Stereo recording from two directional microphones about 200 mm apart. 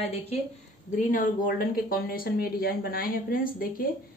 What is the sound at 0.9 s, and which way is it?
A woman's voice, 45° left (ahead or behind).